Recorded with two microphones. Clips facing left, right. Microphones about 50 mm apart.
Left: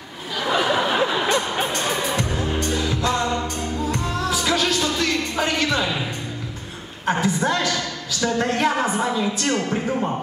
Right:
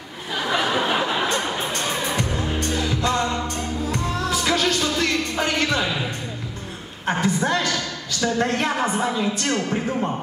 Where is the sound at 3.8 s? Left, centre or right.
Left.